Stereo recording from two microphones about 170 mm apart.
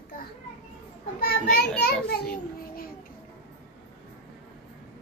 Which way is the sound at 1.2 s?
65° left (ahead or behind).